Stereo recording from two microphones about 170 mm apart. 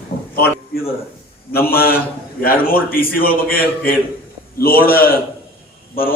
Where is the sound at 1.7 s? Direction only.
60° left (ahead or behind).